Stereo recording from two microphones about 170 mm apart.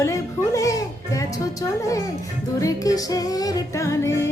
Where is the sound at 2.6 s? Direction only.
20° left (ahead or behind).